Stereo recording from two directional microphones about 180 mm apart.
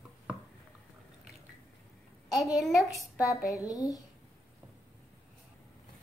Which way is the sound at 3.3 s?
20° left (ahead or behind).